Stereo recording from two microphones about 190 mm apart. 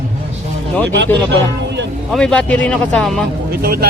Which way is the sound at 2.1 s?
5° left (ahead or behind).